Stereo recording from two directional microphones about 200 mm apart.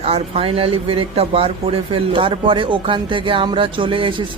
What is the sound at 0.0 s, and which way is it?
Speech, 30° right (ahead or behind).